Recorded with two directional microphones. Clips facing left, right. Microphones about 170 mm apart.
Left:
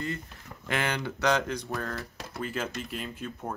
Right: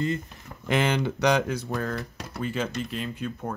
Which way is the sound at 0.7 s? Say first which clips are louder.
Right 6 dB; 20° right (ahead or behind).